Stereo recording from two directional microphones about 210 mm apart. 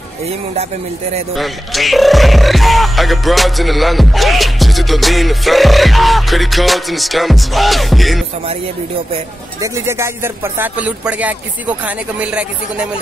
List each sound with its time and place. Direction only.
1.3 s speech: centre (ahead or behind)
9.6 s speech: 15° right (ahead or behind)